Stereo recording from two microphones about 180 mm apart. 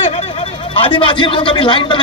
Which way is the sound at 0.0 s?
35° left (ahead or behind).